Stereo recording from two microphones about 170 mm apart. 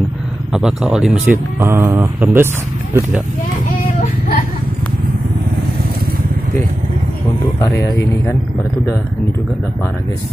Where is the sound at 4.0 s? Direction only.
55° left (ahead or behind).